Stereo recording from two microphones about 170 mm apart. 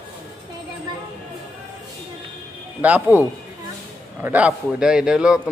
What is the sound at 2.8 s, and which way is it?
Speech, 10° right (ahead or behind).